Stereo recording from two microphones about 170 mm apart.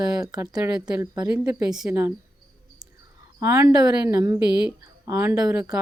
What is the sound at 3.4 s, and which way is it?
A woman's voice, 15° right (ahead or behind).